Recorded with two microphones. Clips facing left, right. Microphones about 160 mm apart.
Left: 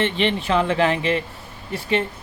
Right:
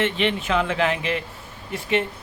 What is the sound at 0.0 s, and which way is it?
Speech, 30° left (ahead or behind).